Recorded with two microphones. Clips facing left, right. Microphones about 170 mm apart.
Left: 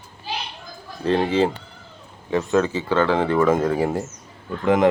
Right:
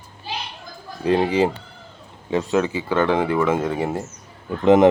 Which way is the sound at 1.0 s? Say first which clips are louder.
Right 1 dB; 15° right (ahead or behind).